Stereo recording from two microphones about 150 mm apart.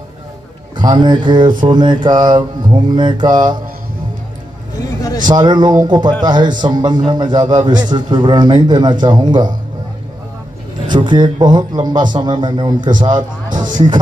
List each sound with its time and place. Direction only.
0.7 s a man's voice: 30° right (ahead or behind)
1.6 s mantra: 30° right (ahead or behind)
2.9 s a man's voice: 30° right (ahead or behind)
5.3 s a man's voice: 30° right (ahead or behind)
10.9 s a man's voice: 30° right (ahead or behind)